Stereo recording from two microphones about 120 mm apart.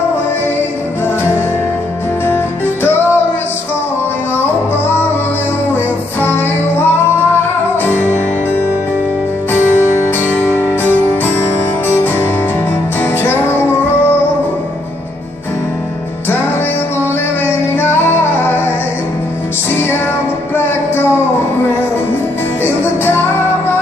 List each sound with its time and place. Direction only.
1.0 s music: 20° left (ahead or behind)
6.2 s music: 15° left (ahead or behind)
7.7 s music: 15° left (ahead or behind)
9.5 s music: 20° left (ahead or behind)
17.7 s music: 20° left (ahead or behind)
20.5 s music: 15° left (ahead or behind)
22.6 s music: 15° left (ahead or behind)